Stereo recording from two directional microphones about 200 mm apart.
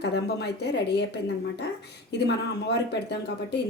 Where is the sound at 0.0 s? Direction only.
55° left (ahead or behind).